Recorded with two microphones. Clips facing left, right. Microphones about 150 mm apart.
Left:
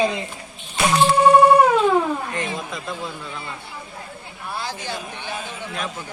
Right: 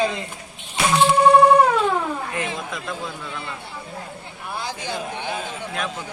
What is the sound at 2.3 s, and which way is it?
Speech, 5° right (ahead or behind).